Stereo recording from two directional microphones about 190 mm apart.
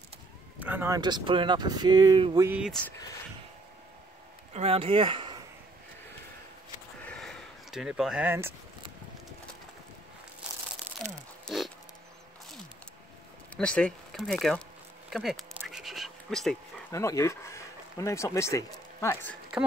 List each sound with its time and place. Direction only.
0.6 s speech: 10° right (ahead or behind)
2.4 s speech: 10° right (ahead or behind)
4.6 s speech: 30° right (ahead or behind)
7.0 s a sound: 5° left (ahead or behind); by 8.5 s 10° right (ahead or behind)
11.4 s pig: centre (ahead or behind)
13.6 s speech: 5° left (ahead or behind)
15.0 s a sound: centre (ahead or behind)
16.9 s speech: 15° left (ahead or behind)